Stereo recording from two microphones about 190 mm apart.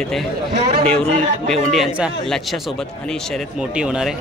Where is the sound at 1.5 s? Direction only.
Centre (ahead or behind).